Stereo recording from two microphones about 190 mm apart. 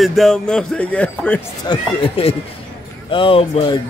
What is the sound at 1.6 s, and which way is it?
Speech, 30° left (ahead or behind).